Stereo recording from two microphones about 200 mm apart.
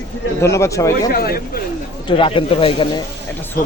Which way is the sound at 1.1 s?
50° left (ahead or behind).